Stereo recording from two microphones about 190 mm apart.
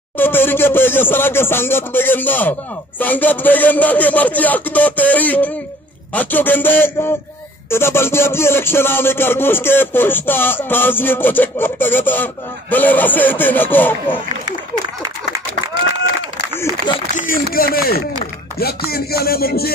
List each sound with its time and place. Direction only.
0.2 s a man's voice: 10° left (ahead or behind)
17.1 s a man's voice: 45° left (ahead or behind)
18.6 s music: 55° left (ahead or behind)